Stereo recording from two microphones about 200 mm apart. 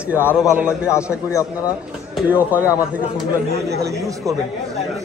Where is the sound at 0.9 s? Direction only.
15° left (ahead or behind).